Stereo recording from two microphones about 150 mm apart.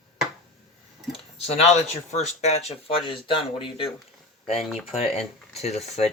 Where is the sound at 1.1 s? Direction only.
45° left (ahead or behind).